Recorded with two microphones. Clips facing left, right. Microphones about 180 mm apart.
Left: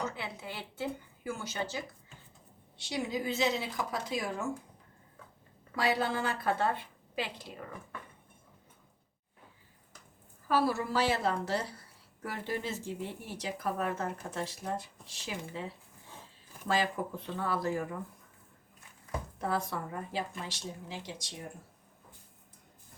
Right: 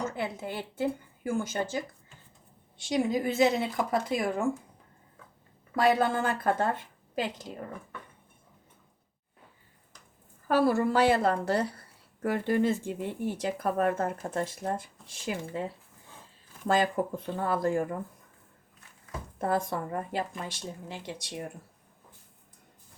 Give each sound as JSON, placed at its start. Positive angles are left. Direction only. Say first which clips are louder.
{"t": 0.2, "sound": "speech", "louder": "right 7 dB", "side_deg": -50}
{"t": 5.7, "sound": "speech", "louder": "right 6 dB", "side_deg": -50}
{"t": 10.5, "sound": "a woman's voice", "louder": "right 5 dB", "side_deg": -50}
{"t": 19.4, "sound": "a woman's voice", "louder": "right 5 dB", "side_deg": -50}